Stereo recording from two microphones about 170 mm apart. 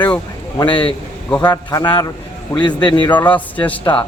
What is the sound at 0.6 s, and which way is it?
Speech, 30° left (ahead or behind).